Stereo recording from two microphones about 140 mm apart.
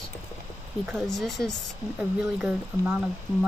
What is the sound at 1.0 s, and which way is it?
Speech, centre (ahead or behind).